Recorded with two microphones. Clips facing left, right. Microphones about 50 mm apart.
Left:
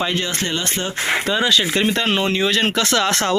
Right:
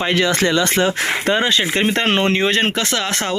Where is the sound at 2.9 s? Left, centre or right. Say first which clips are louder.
Left 3 dB; centre.